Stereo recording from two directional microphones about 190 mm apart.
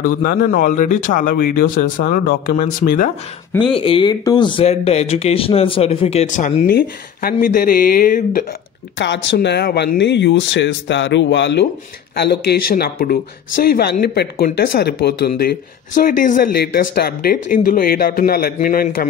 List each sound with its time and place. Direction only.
0.0 s speech: 50° left (ahead or behind)
3.7 s speech: 30° left (ahead or behind); by 8.5 s 50° left (ahead or behind)
8.9 s speech: 70° left (ahead or behind); by 19.0 s 50° left (ahead or behind)